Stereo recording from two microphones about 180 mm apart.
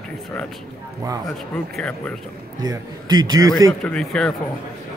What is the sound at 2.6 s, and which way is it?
A man's voice, 20° right (ahead or behind).